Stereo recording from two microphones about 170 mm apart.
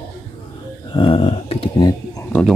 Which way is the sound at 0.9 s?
35° left (ahead or behind).